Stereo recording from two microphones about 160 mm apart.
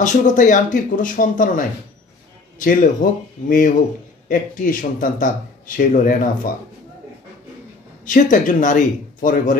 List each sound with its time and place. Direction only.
0.0 s speech: 50° left (ahead or behind)
8.0 s speech: 55° left (ahead or behind)